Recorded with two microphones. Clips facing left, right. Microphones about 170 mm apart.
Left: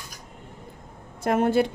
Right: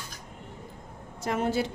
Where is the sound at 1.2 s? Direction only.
55° left (ahead or behind).